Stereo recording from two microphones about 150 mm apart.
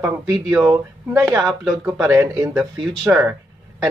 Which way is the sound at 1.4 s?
Centre (ahead or behind).